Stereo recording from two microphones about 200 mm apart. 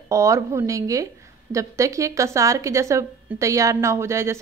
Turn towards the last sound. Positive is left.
turn(degrees=-15)  # may be behind; listen again after turning